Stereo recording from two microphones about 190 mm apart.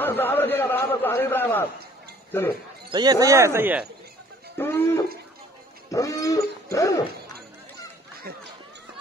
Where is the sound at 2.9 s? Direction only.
20° right (ahead or behind).